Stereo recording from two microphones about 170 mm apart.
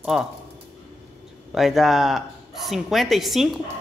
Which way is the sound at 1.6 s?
Centre (ahead or behind).